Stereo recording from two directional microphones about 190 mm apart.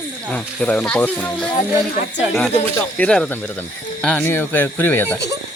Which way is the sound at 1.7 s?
10° right (ahead or behind).